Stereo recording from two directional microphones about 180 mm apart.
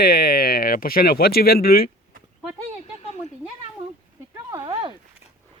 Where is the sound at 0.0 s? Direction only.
55° left (ahead or behind).